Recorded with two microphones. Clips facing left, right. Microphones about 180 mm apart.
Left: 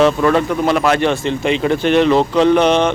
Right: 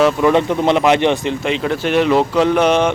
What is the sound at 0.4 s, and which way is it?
Speech, 25° right (ahead or behind).